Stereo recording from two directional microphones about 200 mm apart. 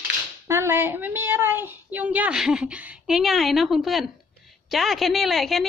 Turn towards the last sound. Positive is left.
turn(degrees=0)  # may be behind; listen again after turning